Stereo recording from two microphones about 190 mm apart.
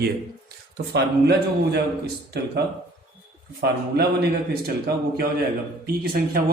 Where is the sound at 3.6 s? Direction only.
55° right (ahead or behind).